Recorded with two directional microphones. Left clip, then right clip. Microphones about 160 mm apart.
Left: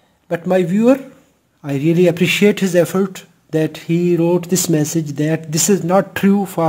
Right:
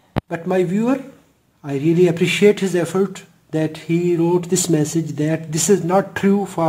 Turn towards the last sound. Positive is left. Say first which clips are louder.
# left 2 dB
turn(degrees=40)  # may be behind; listen again after turning